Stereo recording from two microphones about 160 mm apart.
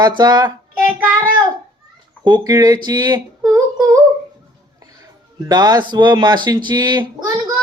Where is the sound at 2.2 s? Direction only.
25° right (ahead or behind).